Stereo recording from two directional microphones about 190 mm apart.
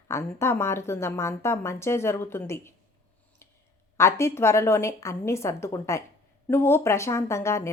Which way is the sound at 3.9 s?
15° left (ahead or behind).